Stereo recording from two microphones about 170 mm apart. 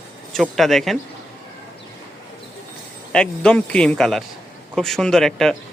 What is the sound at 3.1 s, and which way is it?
Speech, 5° left (ahead or behind).